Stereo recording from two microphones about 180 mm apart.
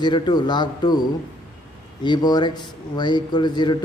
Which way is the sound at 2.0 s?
25° left (ahead or behind).